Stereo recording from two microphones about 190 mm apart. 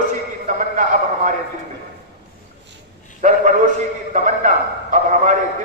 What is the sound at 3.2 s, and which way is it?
A man's voice, 40° right (ahead or behind).